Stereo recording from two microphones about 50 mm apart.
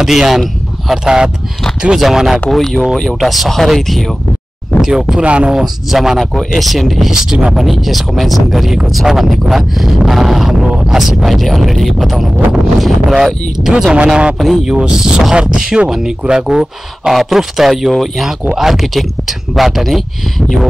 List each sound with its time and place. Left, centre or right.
0.0 s speech: centre
2.0 s speech: centre
4.8 s speech: centre
5.2 s speech: right
5.6 s speech: centre
7.1 s speech: centre
7.5 s speech: centre
13.9 s speech: right
14.4 s speech: centre
14.8 s speech: centre